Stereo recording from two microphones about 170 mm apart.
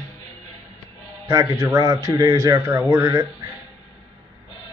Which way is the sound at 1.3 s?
20° right (ahead or behind).